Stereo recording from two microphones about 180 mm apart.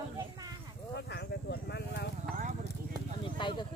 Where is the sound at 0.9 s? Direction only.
70° left (ahead or behind).